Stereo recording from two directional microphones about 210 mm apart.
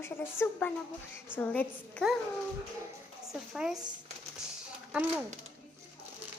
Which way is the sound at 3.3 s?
Centre (ahead or behind).